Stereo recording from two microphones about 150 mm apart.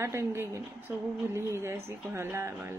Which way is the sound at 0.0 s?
15° right (ahead or behind).